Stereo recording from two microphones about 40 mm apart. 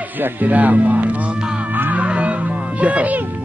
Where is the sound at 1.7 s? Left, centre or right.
Right.